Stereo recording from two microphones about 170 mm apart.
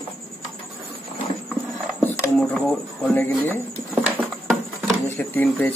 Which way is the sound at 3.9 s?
Centre (ahead or behind).